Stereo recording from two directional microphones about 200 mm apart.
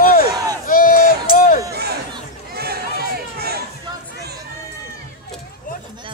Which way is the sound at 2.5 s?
50° right (ahead or behind).